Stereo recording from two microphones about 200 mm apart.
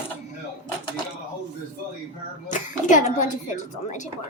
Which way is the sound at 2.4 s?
40° left (ahead or behind).